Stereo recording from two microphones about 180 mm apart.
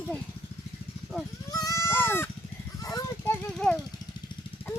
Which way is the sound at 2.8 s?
20° left (ahead or behind).